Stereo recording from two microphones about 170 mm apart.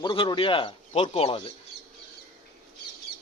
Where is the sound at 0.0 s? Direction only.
30° left (ahead or behind).